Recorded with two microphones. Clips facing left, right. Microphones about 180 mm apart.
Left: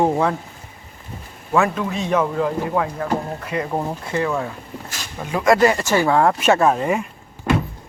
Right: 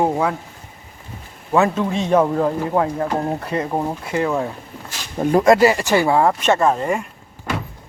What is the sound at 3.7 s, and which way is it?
Speech, 10° right (ahead or behind).